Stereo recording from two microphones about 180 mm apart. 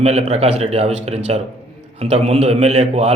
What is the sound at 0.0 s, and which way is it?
A man's voice, 35° right (ahead or behind).